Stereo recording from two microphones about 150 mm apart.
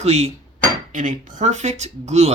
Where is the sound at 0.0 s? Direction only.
45° right (ahead or behind).